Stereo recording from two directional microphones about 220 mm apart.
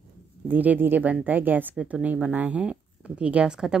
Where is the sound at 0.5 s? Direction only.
10° right (ahead or behind).